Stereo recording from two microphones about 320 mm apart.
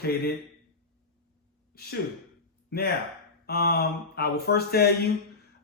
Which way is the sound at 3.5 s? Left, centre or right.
Left.